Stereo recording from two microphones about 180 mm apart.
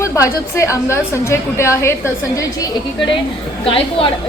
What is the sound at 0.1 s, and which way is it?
A woman's voice, 15° left (ahead or behind).